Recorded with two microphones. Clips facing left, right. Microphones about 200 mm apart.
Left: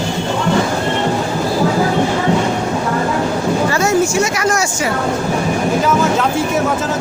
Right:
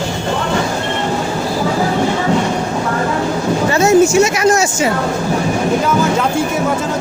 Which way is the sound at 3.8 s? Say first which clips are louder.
Right 8 dB; 20° right (ahead or behind).